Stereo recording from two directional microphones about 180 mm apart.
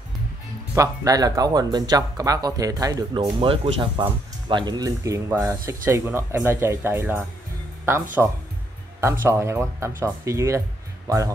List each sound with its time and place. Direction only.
0.7 s speech: 20° right (ahead or behind)